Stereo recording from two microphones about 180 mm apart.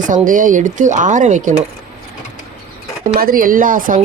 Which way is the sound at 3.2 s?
55° right (ahead or behind).